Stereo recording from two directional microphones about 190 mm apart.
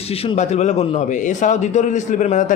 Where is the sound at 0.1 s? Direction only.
30° left (ahead or behind).